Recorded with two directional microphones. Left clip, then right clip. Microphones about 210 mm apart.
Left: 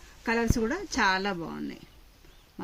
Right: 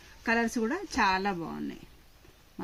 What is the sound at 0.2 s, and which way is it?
A woman's voice, 5° right (ahead or behind).